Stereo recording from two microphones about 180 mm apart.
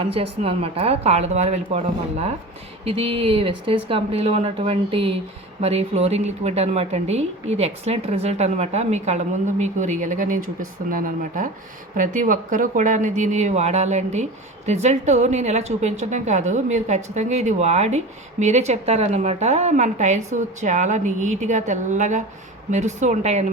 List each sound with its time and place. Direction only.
0.0 s speech: 30° right (ahead or behind)